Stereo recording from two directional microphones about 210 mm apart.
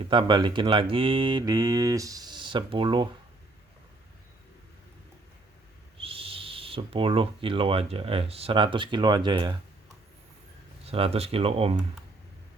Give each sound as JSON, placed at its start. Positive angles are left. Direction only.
{"t": 0.0, "sound": "speech", "side_deg": -25}
{"t": 6.0, "sound": "speech", "side_deg": -25}
{"t": 10.8, "sound": "speech", "side_deg": -30}